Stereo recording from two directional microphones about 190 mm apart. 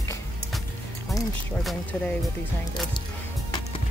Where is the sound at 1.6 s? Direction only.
Centre (ahead or behind).